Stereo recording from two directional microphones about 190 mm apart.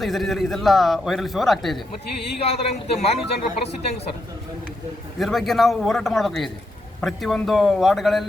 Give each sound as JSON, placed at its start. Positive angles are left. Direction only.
{"t": 0.0, "sound": "a man's voice", "side_deg": 0}
{"t": 2.4, "sound": "a man's voice", "side_deg": 35}
{"t": 5.2, "sound": "a man's voice", "side_deg": 0}